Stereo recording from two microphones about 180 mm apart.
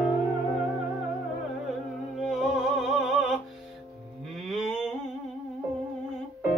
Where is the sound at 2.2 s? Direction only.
Centre (ahead or behind).